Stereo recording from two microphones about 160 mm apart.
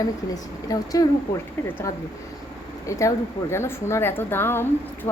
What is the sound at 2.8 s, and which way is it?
A woman's voice, 20° left (ahead or behind).